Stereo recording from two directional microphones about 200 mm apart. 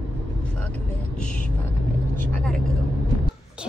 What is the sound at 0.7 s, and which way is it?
Vehicle, 5° left (ahead or behind).